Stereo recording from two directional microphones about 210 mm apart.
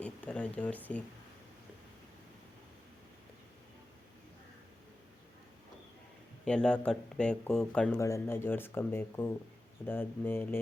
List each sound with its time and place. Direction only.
0.0 s speech: 5° left (ahead or behind)
6.4 s speech: 5° left (ahead or behind)